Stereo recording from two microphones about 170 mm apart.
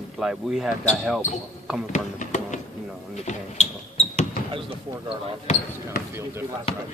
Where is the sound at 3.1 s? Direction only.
40° left (ahead or behind).